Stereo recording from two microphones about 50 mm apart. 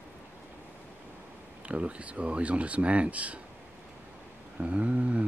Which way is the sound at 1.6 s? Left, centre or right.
Right.